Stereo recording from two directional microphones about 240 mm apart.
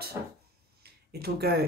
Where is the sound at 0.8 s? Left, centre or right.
Right.